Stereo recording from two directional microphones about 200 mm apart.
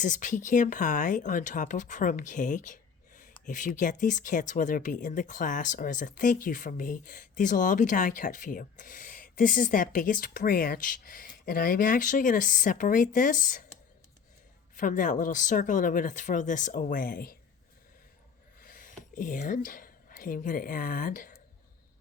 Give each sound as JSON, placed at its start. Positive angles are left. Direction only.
{"t": 0.0, "sound": "speech", "side_deg": 40}
{"t": 14.8, "sound": "speech", "side_deg": 40}
{"t": 18.6, "sound": "speech", "side_deg": 45}